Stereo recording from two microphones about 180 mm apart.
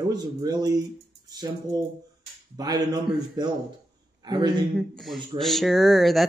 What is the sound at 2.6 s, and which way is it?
A man's voice, 20° right (ahead or behind).